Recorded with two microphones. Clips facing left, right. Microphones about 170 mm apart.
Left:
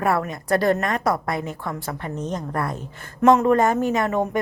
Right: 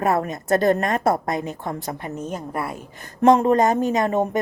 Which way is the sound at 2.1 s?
10° right (ahead or behind).